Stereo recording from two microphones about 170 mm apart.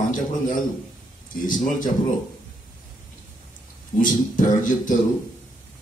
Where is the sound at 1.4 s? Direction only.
50° left (ahead or behind).